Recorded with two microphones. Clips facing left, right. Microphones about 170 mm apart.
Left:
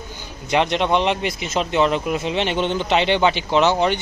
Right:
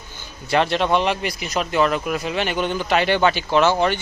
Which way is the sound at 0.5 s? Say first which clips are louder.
Even; 20° left (ahead or behind).